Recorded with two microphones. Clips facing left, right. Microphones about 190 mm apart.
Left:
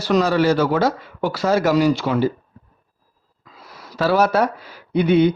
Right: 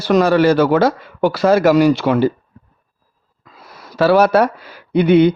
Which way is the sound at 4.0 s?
65° right (ahead or behind).